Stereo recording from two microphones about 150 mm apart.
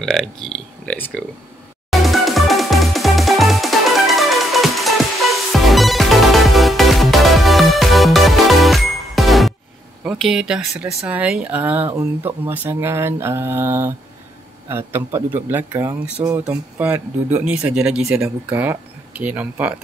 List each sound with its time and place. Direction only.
0.0 s speech: centre (ahead or behind)
1.9 s music: centre (ahead or behind)
10.0 s speech: 5° right (ahead or behind)